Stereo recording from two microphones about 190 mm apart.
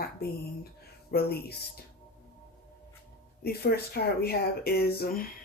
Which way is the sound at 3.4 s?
55° left (ahead or behind).